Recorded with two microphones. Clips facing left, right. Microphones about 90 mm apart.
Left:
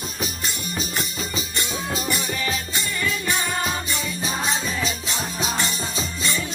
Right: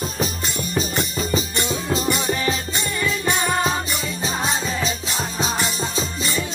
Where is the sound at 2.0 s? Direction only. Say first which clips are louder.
Right 4 dB; 30° right (ahead or behind).